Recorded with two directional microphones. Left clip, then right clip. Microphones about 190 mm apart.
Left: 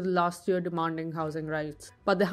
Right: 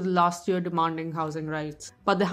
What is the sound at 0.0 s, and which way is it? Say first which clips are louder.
A woman's voice: right 4 dB; 20° left (ahead or behind).